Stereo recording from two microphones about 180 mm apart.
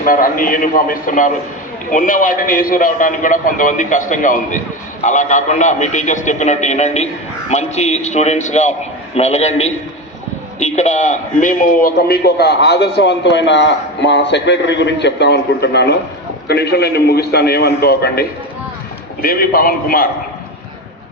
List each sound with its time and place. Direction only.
0.0 s a man's voice: 50° left (ahead or behind)